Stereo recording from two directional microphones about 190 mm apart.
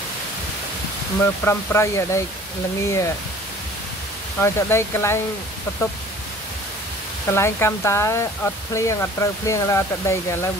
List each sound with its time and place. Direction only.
1.2 s speech: 10° left (ahead or behind)
4.4 s speech: 15° left (ahead or behind)
7.2 s speech: 15° left (ahead or behind)